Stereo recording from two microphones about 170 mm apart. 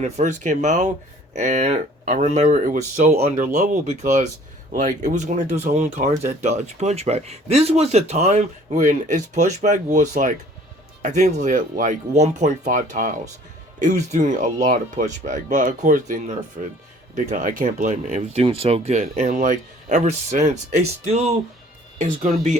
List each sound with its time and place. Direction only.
0.0 s speech: 45° right (ahead or behind)